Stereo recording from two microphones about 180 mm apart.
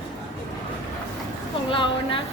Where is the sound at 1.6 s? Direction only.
30° left (ahead or behind).